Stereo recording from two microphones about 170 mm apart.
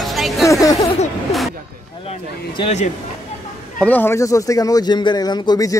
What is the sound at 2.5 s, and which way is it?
Speech, 40° left (ahead or behind).